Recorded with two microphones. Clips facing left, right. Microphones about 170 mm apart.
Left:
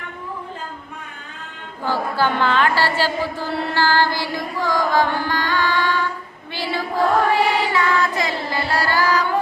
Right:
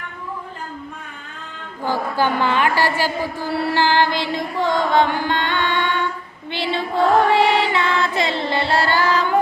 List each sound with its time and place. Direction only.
1.8 s a sound: 15° right (ahead or behind)
6.5 s choir: 25° right (ahead or behind)
7.3 s music: 25° right (ahead or behind)